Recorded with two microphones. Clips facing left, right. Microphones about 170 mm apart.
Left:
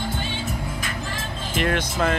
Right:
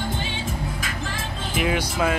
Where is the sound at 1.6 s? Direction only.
5° right (ahead or behind).